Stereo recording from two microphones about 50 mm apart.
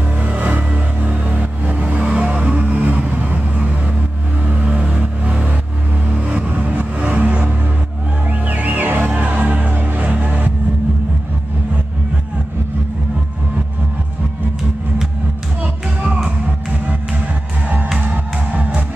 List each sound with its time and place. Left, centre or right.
0.2 s vehicle: right
8.3 s music: right
9.2 s music: right
16.3 s music: right